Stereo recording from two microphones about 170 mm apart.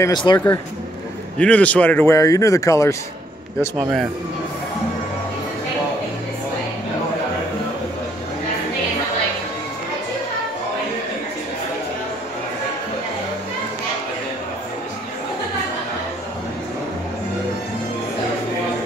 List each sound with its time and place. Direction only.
0.0 s speech: 25° left (ahead or behind)
1.4 s a man's voice: 10° left (ahead or behind)
3.7 s speech: 10° right (ahead or behind)